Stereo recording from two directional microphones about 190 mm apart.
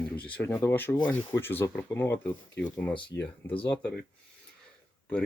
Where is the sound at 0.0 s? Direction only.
10° left (ahead or behind).